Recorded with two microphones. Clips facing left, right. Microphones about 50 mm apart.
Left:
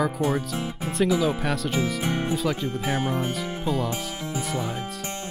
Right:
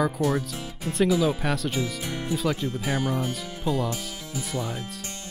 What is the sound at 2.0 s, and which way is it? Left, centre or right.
Speech, left.